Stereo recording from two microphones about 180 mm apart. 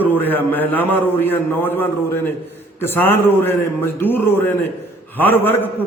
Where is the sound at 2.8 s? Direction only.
10° left (ahead or behind).